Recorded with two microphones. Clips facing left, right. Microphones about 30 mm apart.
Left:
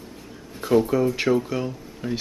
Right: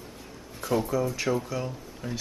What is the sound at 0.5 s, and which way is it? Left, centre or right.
Speech, left.